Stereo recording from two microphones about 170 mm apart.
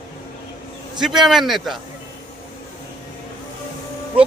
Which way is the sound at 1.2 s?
Centre (ahead or behind).